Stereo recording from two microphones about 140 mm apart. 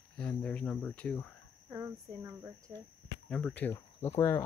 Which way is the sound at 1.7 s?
20° right (ahead or behind).